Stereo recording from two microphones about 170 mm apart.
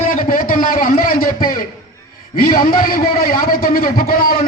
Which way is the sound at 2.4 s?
60° left (ahead or behind).